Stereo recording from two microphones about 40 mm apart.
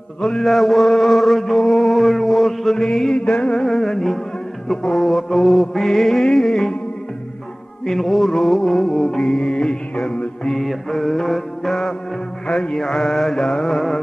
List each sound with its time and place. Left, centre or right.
0.2 s chant: centre
3.2 s music: left
3.6 s mantra: centre
4.6 s chant: centre
5.9 s mantra: centre
7.8 s chant: centre
9.4 s music: left
10.6 s chant: centre
12.4 s mantra: left